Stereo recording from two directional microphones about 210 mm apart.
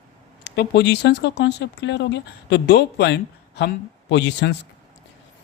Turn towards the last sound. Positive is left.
turn(degrees=55)  # may be behind; listen again after turning